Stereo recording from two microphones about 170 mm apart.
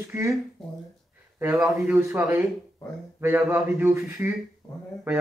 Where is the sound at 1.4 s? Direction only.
10° right (ahead or behind).